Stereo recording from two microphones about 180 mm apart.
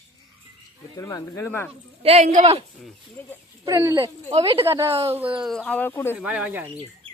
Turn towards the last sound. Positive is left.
turn(degrees=-10)  # may be behind; listen again after turning